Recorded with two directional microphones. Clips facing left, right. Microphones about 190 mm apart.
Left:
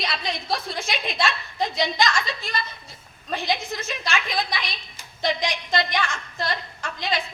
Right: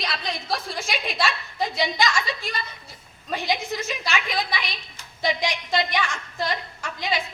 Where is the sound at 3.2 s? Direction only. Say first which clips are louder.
Even; 10° right (ahead or behind).